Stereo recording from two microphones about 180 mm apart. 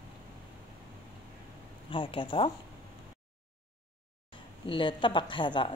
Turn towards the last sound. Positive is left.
turn(degrees=25)  # may be behind; listen again after turning